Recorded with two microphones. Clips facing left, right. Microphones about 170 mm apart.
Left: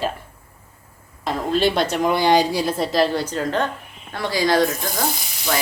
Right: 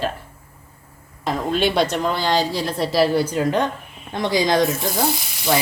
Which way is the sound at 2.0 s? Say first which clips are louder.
Left 4 dB; 15° left (ahead or behind).